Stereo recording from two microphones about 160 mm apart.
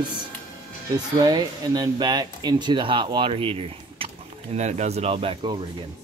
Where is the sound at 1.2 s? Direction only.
25° right (ahead or behind).